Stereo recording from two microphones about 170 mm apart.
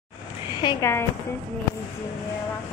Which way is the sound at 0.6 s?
20° left (ahead or behind).